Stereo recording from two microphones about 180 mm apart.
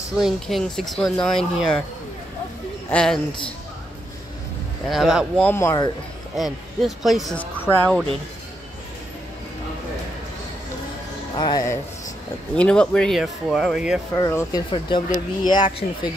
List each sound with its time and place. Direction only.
0.2 s speech: centre (ahead or behind)
2.9 s a woman's voice: 5° left (ahead or behind)
4.8 s speech: centre (ahead or behind); by 5.9 s 15° left (ahead or behind)
6.3 s speech: centre (ahead or behind)
7.6 s speech: 10° left (ahead or behind)
11.3 s speech: 25° left (ahead or behind)
12.5 s speech: 5° left (ahead or behind)
14.1 s speech: 20° left (ahead or behind)